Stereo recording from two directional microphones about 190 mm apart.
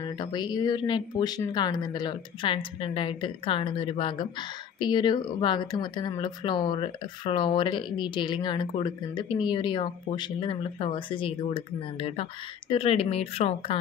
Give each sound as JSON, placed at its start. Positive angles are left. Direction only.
{"t": 0.0, "sound": "speech", "side_deg": 20}